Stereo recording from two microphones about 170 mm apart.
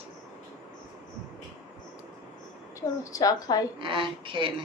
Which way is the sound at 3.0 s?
20° left (ahead or behind).